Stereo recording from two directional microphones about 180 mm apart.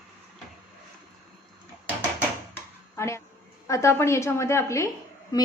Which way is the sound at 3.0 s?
15° left (ahead or behind).